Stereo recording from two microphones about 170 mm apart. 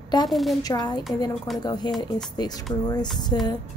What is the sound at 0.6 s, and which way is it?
A woman's voice, 25° left (ahead or behind).